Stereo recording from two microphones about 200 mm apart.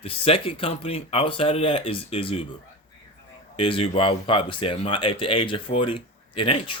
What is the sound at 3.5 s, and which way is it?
Speech, 25° left (ahead or behind).